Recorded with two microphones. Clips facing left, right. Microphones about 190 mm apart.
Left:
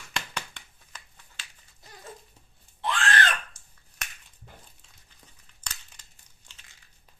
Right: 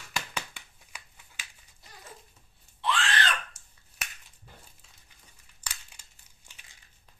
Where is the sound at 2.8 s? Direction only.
45° left (ahead or behind).